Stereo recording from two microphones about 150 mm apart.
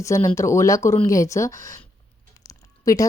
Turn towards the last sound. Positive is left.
turn(degrees=20)  # may be behind; listen again after turning